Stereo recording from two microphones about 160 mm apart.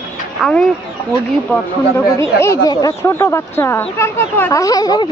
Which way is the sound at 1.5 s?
15° left (ahead or behind).